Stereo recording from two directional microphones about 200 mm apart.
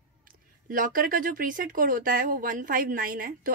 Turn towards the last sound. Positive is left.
turn(degrees=-45)  # may be behind; listen again after turning